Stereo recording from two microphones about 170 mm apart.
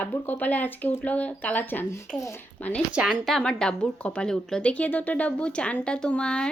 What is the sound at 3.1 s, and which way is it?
Speech, 5° left (ahead or behind).